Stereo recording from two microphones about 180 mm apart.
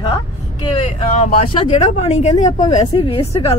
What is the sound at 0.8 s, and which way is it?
Speech, 35° left (ahead or behind).